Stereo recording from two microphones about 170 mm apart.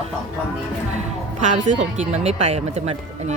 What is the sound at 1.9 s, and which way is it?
Speech, 40° right (ahead or behind).